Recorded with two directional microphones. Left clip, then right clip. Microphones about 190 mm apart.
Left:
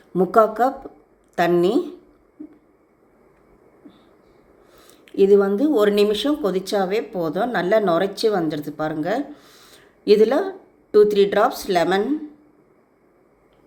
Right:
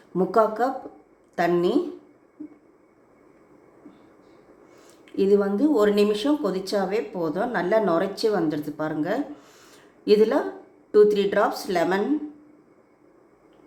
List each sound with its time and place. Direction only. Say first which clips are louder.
0.1 s a woman's voice: left 4 dB; 20° left (ahead or behind)
4.7 s speech: left 3 dB; 15° left (ahead or behind)